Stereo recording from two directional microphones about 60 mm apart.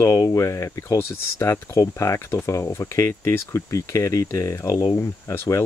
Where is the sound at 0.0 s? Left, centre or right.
Left.